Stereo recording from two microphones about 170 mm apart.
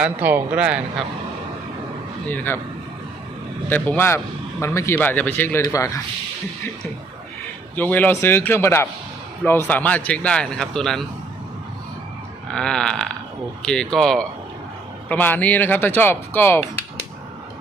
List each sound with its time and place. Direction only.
0.0 s speech: 10° right (ahead or behind)
2.3 s speech: 10° left (ahead or behind)
3.7 s speech: 10° left (ahead or behind)
7.8 s speech: 10° left (ahead or behind)
12.5 s a sound: 5° left (ahead or behind)
13.7 s speech: 5° left (ahead or behind)